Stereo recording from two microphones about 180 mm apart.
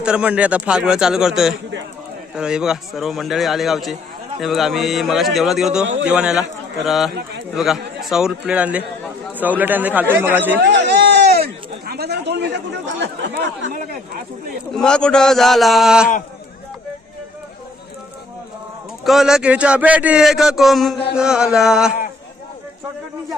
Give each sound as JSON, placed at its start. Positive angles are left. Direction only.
{"t": 0.0, "sound": "a man's voice", "side_deg": -5}
{"t": 7.1, "sound": "a man's voice", "side_deg": -70}
{"t": 7.5, "sound": "a man's voice", "side_deg": 0}
{"t": 10.6, "sound": "a sound", "side_deg": -70}
{"t": 11.9, "sound": "chatter", "side_deg": -65}
{"t": 13.7, "sound": "speech", "side_deg": -55}
{"t": 14.8, "sound": "a man's voice", "side_deg": 5}
{"t": 19.0, "sound": "a man's voice", "side_deg": 0}